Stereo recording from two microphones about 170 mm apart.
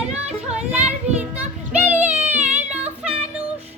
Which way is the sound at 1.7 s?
10° right (ahead or behind).